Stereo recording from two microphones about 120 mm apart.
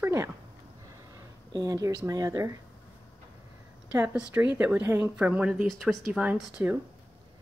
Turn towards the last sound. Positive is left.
turn(degrees=-15)  # may be behind; listen again after turning